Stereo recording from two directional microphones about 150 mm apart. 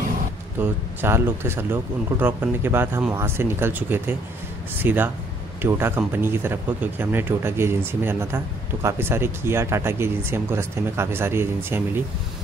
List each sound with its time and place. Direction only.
0.6 s speech: 15° right (ahead or behind)